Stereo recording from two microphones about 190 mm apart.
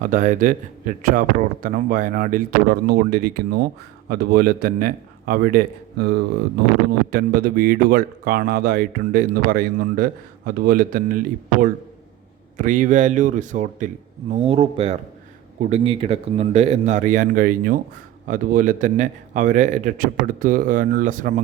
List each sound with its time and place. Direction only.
0.0 s speech: 40° right (ahead or behind)
12.5 s speech: 45° right (ahead or behind)